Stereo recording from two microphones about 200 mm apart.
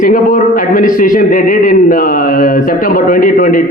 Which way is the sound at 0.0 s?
45° left (ahead or behind).